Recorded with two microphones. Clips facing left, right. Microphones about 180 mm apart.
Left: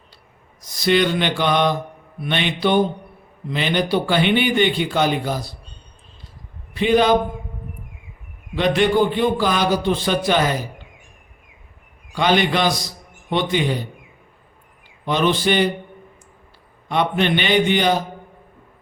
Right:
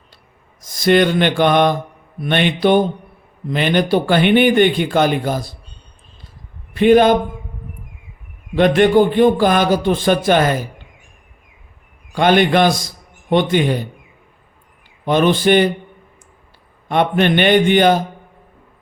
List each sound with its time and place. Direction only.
0.6 s speech: 50° right (ahead or behind)
6.7 s speech: 50° right (ahead or behind)
8.5 s speech: 50° right (ahead or behind)
12.1 s speech: 55° right (ahead or behind)
15.0 s speech: 50° right (ahead or behind)
16.9 s speech: 55° right (ahead or behind)